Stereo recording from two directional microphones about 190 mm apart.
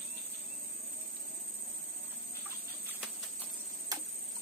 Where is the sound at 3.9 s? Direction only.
20° right (ahead or behind).